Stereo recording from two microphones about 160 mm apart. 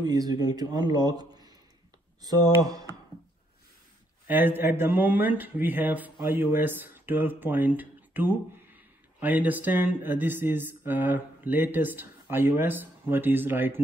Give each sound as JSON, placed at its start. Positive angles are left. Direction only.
{"t": 0.0, "sound": "a man's voice", "side_deg": -25}
{"t": 4.3, "sound": "speech", "side_deg": -10}